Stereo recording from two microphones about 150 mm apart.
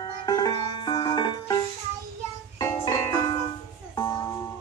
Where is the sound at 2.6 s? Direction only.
25° left (ahead or behind).